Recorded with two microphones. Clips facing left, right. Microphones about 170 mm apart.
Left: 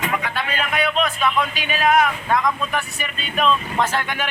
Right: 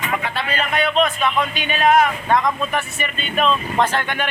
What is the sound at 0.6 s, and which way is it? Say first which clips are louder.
Speech: right 3 dB; centre (ahead or behind).